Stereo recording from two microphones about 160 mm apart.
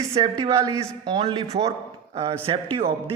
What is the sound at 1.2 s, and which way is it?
A man's voice, 35° right (ahead or behind).